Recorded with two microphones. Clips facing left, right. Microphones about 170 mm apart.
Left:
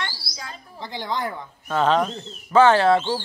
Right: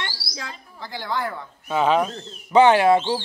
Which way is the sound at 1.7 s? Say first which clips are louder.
Even; 10° right (ahead or behind).